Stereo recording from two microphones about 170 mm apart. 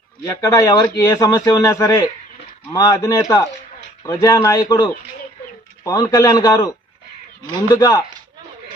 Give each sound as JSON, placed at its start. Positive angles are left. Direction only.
{"t": 0.3, "sound": "a man's voice", "side_deg": 20}
{"t": 7.7, "sound": "a man's voice", "side_deg": 20}